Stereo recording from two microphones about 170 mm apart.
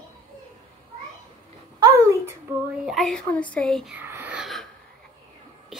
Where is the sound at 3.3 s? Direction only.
10° left (ahead or behind).